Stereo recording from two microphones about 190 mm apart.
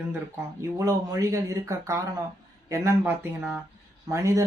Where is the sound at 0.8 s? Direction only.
15° right (ahead or behind).